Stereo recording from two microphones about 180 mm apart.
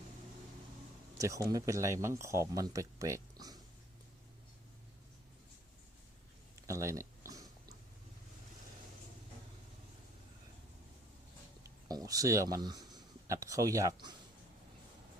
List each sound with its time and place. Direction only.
1.2 s speech: 20° right (ahead or behind)
6.7 s a sound: 15° right (ahead or behind)
11.6 s speech: 20° right (ahead or behind)